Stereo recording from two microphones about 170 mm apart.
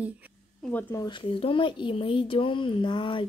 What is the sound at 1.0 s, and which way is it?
Speech, 30° left (ahead or behind).